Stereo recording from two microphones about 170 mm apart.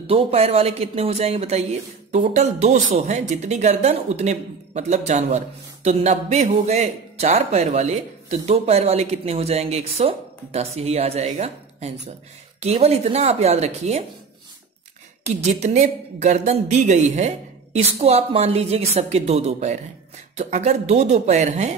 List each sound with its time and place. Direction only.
0.0 s speech: 35° right (ahead or behind)
15.2 s a woman's voice: 40° right (ahead or behind)